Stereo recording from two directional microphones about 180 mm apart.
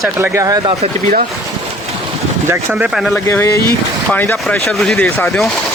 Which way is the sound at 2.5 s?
5° right (ahead or behind).